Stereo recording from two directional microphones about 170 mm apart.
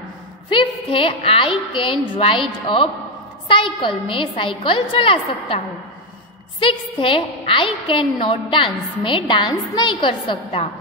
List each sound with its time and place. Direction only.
0.5 s a woman's voice: 30° left (ahead or behind)
6.6 s a woman's voice: 30° left (ahead or behind)